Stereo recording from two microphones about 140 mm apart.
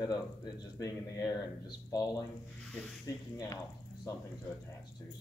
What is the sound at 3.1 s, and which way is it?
Speech, 25° left (ahead or behind).